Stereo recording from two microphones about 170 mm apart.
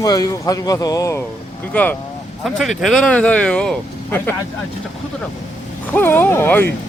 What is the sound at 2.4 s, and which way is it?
Speech, centre (ahead or behind).